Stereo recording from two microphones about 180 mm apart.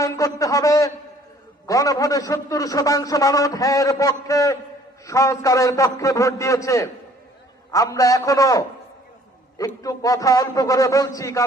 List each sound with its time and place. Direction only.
0.0 s a man's voice: 20° left (ahead or behind)